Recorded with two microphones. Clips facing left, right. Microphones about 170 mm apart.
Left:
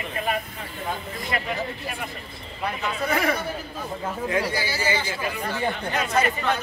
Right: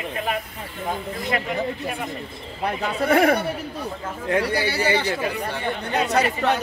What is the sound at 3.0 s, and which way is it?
Speech, 60° right (ahead or behind).